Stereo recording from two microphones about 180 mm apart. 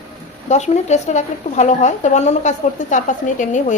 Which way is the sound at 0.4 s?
40° left (ahead or behind).